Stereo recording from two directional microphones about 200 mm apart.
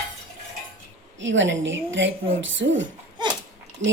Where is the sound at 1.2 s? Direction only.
70° right (ahead or behind).